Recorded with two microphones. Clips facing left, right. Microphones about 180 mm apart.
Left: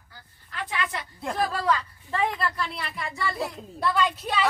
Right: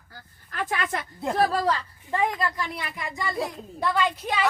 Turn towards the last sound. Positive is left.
turn(degrees=-10)  # may be behind; listen again after turning